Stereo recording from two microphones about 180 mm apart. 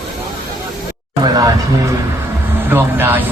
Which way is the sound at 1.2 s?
20° right (ahead or behind).